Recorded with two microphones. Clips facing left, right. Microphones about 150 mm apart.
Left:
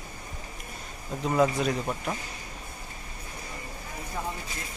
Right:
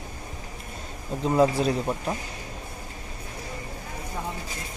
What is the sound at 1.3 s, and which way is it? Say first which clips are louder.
Speech: right 3 dB; 30° right (ahead or behind).